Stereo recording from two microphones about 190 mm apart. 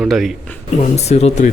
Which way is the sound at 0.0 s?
Centre (ahead or behind).